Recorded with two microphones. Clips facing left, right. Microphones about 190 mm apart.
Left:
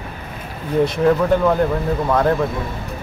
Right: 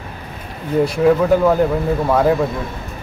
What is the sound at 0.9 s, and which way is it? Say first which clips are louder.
Speech: right 4 dB; 5° right (ahead or behind).